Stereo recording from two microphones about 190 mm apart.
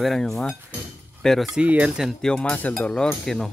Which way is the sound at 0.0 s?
Centre (ahead or behind).